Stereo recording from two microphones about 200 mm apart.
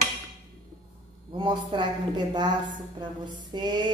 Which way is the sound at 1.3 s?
25° right (ahead or behind).